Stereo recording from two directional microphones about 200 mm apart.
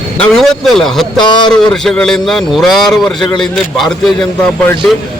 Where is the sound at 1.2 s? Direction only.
20° left (ahead or behind).